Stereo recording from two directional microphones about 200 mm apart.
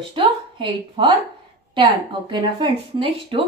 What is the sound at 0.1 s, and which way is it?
A woman's voice, 25° right (ahead or behind).